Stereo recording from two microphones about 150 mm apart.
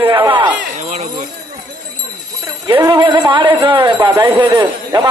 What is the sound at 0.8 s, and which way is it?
Speech, 50° right (ahead or behind).